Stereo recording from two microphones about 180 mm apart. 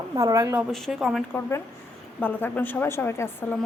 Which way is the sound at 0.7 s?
Centre (ahead or behind).